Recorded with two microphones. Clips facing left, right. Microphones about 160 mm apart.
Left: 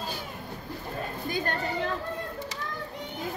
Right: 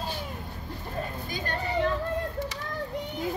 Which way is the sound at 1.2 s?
55° left (ahead or behind).